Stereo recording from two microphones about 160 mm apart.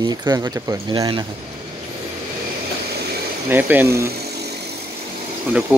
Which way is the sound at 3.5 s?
10° right (ahead or behind).